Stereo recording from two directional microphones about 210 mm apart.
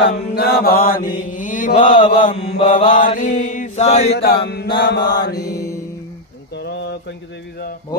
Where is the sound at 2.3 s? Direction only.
25° left (ahead or behind).